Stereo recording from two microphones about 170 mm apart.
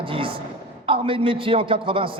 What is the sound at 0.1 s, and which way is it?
A man's voice, 30° right (ahead or behind).